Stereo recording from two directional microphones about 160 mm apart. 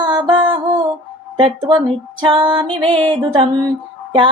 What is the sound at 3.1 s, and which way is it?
Female singing, 30° right (ahead or behind).